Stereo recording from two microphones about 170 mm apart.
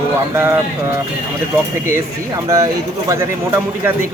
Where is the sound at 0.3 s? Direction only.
15° right (ahead or behind).